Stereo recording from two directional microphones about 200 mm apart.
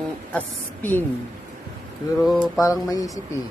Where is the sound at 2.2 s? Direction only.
Centre (ahead or behind).